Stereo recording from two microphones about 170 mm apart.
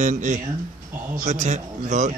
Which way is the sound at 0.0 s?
45° right (ahead or behind).